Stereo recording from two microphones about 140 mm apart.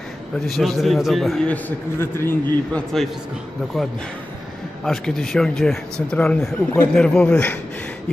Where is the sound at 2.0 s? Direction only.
15° left (ahead or behind).